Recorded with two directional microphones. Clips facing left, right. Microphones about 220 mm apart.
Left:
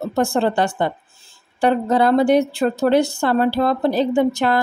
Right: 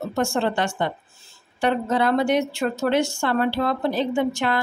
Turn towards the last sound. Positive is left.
turn(degrees=40)  # may be behind; listen again after turning